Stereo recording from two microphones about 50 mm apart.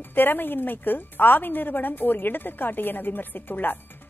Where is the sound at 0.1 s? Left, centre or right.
Left.